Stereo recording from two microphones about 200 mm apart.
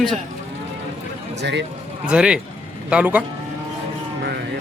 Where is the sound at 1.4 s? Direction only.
60° right (ahead or behind).